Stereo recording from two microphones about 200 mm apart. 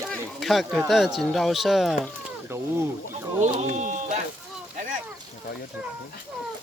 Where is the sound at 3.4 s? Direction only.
35° right (ahead or behind).